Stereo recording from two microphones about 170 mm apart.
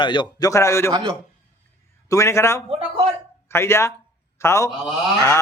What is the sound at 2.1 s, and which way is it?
A man's voice, 15° left (ahead or behind).